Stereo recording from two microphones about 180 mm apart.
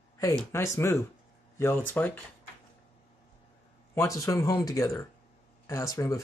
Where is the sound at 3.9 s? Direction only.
15° left (ahead or behind).